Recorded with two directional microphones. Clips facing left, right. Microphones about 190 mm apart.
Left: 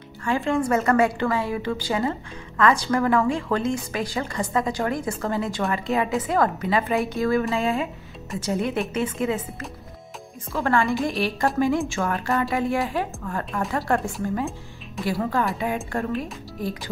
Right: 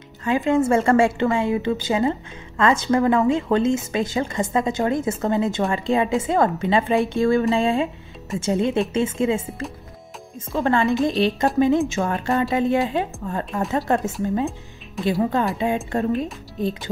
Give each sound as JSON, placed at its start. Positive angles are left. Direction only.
{"t": 0.2, "sound": "a woman's voice", "side_deg": -20}
{"t": 15.0, "sound": "speech", "side_deg": 0}
{"t": 15.5, "sound": "a woman's voice", "side_deg": -25}